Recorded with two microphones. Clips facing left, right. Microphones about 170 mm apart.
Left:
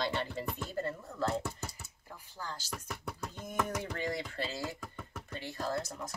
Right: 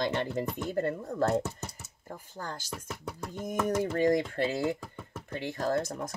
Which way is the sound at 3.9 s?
50° right (ahead or behind).